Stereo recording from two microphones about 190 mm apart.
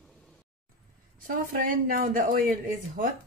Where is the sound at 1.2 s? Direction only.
50° right (ahead or behind).